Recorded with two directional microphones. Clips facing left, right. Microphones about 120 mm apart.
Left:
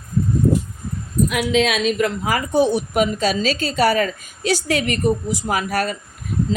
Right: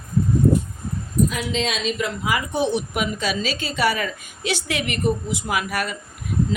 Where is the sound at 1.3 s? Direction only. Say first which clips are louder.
Left 6 dB; 65° left (ahead or behind).